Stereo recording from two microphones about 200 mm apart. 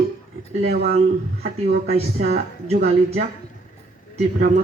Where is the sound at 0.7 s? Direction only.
50° right (ahead or behind).